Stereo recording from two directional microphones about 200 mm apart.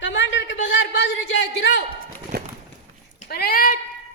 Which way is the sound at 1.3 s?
65° left (ahead or behind).